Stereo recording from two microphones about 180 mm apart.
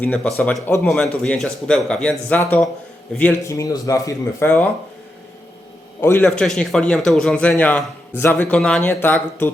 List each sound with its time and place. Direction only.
0.0 s speech: 5° left (ahead or behind)
6.0 s speech: 10° left (ahead or behind)